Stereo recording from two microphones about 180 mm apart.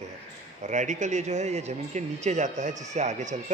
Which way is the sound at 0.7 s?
40° right (ahead or behind).